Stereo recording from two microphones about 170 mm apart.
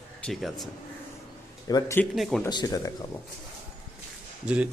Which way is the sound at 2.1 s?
Centre (ahead or behind).